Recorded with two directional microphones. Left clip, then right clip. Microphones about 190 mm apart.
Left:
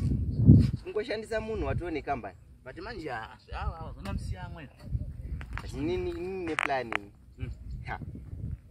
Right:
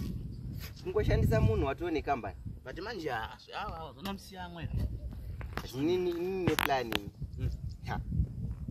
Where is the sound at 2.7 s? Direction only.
10° left (ahead or behind); by 6.4 s 5° right (ahead or behind).